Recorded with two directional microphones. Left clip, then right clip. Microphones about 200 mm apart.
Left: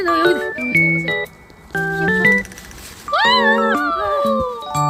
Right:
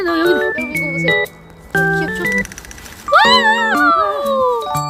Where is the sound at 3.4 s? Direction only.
Centre (ahead or behind).